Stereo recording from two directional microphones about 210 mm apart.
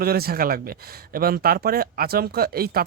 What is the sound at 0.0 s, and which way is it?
Speech, 45° right (ahead or behind).